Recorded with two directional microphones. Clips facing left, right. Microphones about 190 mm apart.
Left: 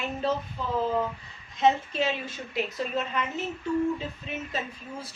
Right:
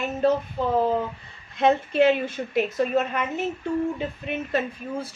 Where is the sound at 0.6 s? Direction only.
60° right (ahead or behind).